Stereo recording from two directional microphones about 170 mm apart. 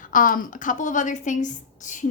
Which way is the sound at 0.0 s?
50° left (ahead or behind).